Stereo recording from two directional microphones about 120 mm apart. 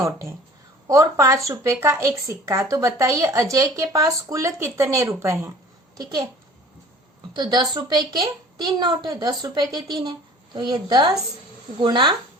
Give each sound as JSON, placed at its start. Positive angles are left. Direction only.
{"t": 0.0, "sound": "a woman's voice", "side_deg": -20}
{"t": 7.3, "sound": "a woman's voice", "side_deg": -35}